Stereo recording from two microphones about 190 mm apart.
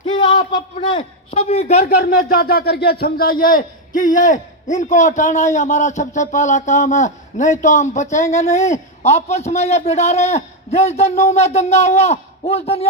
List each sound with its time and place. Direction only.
0.0 s a man's voice: 25° left (ahead or behind)